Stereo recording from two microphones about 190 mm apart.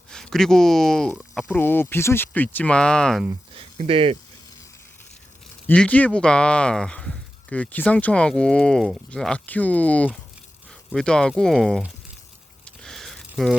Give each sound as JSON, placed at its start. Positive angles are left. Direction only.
{"t": 0.1, "sound": "speech", "side_deg": 5}
{"t": 1.5, "sound": "speech", "side_deg": 10}
{"t": 3.5, "sound": "speech", "side_deg": -30}
{"t": 5.6, "sound": "speech", "side_deg": 5}
{"t": 12.6, "sound": "a sound", "side_deg": 0}